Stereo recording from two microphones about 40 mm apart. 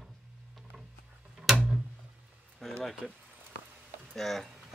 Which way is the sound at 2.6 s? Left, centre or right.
Centre.